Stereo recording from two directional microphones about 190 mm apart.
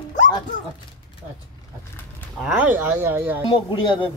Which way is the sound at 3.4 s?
30° left (ahead or behind).